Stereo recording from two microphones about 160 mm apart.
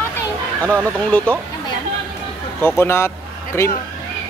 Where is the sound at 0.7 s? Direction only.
15° right (ahead or behind).